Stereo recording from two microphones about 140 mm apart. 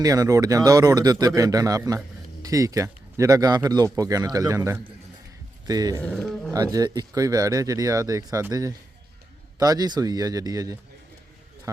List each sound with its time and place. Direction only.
0.0 s speech: 25° right (ahead or behind)
6.0 s speech: 5° left (ahead or behind)
6.5 s speech: 25° right (ahead or behind)